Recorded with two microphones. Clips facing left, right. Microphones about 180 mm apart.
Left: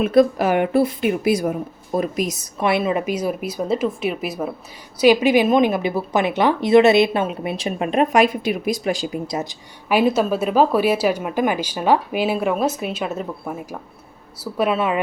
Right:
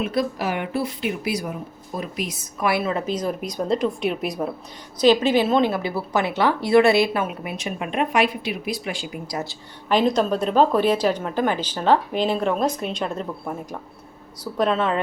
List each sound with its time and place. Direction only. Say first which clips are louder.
0.0 s a woman's voice: left 8 dB; 50° left (ahead or behind)
2.6 s a woman's voice: left 3 dB; 25° left (ahead or behind); by 9.2 s 40° left (ahead or behind)
9.2 s a woman's voice: left 4 dB; 20° left (ahead or behind)